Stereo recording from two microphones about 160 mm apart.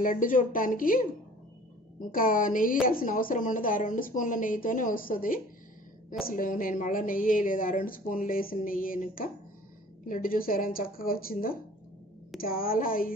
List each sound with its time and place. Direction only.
0.0 s speech: 55° left (ahead or behind)